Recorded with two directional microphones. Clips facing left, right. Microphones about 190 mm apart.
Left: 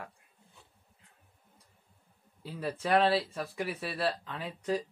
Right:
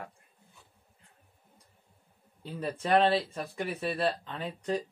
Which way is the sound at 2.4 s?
5° left (ahead or behind).